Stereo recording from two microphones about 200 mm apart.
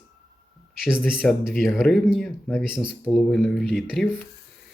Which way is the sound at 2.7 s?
25° right (ahead or behind).